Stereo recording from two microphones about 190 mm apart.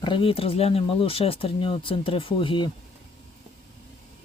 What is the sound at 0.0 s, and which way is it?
Speech, 25° left (ahead or behind).